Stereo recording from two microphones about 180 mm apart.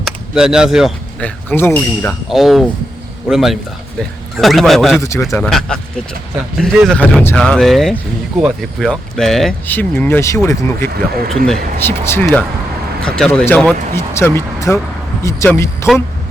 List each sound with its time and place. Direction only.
0.0 s speech: 5° right (ahead or behind)
1.2 s speech: 10° left (ahead or behind)
2.3 s speech: centre (ahead or behind)
4.9 s speech: 15° left (ahead or behind)
5.3 s speech: 5° left (ahead or behind)